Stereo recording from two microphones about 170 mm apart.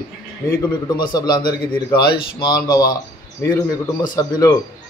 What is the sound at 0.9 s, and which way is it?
A man's voice, 25° left (ahead or behind).